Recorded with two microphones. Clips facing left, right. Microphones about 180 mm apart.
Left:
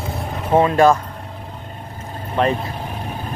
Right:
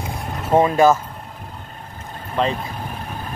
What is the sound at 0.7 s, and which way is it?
Speech, centre (ahead or behind).